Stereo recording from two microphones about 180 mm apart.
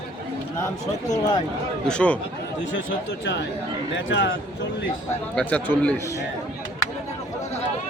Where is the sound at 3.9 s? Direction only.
70° left (ahead or behind).